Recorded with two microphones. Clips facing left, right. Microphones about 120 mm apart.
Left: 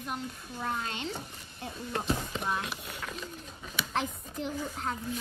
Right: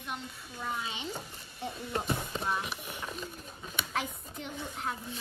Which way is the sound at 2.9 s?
20° right (ahead or behind).